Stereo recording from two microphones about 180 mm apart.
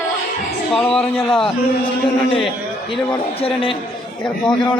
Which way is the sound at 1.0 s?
30° left (ahead or behind).